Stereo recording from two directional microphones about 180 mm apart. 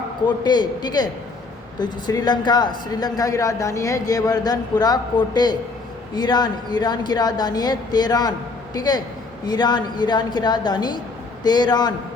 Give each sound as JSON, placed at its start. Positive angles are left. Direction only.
{"t": 0.3, "sound": "speech", "side_deg": 25}